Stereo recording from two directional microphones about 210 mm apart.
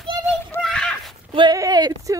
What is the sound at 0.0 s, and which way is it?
Children playing, 5° left (ahead or behind).